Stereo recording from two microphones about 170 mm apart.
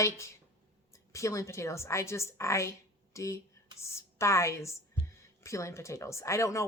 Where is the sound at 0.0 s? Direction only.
15° left (ahead or behind).